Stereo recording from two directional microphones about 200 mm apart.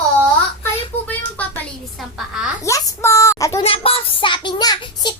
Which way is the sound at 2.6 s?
15° left (ahead or behind).